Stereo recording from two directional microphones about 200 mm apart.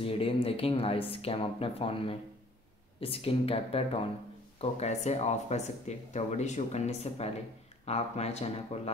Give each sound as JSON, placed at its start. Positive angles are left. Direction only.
{"t": 0.0, "sound": "speech", "side_deg": 30}